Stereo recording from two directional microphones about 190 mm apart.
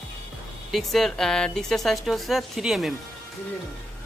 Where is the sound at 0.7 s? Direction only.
Centre (ahead or behind).